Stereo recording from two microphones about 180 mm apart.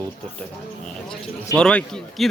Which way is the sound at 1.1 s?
5° left (ahead or behind).